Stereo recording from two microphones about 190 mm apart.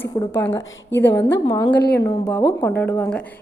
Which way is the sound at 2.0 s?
20° left (ahead or behind).